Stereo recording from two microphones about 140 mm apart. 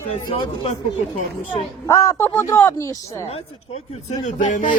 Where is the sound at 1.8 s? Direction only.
25° left (ahead or behind).